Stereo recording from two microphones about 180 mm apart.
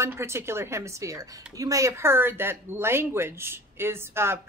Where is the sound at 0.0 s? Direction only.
15° right (ahead or behind).